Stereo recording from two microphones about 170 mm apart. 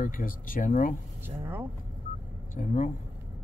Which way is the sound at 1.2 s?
10° right (ahead or behind).